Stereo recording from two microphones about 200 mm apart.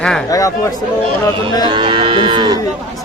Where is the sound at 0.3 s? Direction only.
15° left (ahead or behind).